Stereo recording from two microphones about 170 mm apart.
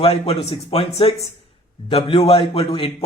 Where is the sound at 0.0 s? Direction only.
35° left (ahead or behind).